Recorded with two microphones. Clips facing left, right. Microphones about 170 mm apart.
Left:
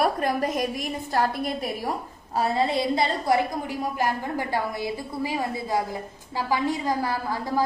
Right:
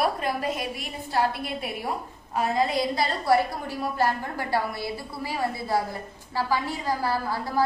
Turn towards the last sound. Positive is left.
turn(degrees=15)  # may be behind; listen again after turning